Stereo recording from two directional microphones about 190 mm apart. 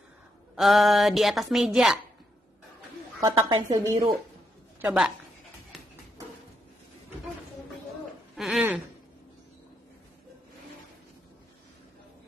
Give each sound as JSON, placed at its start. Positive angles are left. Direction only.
{"t": 0.6, "sound": "a woman's voice", "side_deg": 0}
{"t": 3.2, "sound": "a woman's voice", "side_deg": -20}
{"t": 4.8, "sound": "a woman's voice", "side_deg": -5}
{"t": 8.4, "sound": "a sound", "side_deg": -5}